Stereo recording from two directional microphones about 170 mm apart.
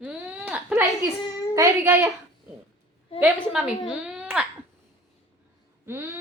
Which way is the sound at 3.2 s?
5° right (ahead or behind).